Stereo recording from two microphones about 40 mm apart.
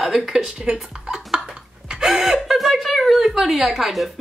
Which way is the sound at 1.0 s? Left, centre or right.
Centre.